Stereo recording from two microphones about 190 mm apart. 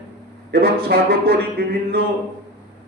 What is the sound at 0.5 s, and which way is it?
A man's voice, 55° right (ahead or behind).